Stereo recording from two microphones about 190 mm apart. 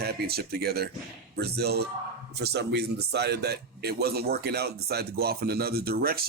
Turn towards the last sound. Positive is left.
turn(degrees=-50)  # may be behind; listen again after turning